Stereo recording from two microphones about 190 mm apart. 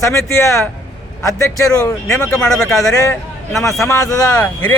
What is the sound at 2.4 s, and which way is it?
Speech, 5° left (ahead or behind).